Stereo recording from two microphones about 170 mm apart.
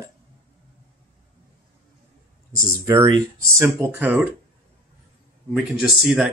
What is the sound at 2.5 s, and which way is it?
Speech, 15° right (ahead or behind).